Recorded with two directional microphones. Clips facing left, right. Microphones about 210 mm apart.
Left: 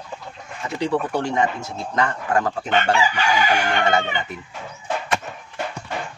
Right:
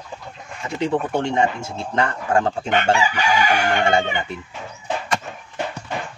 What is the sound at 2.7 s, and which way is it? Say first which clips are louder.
Speech: left 1 dB; 15° right (ahead or behind).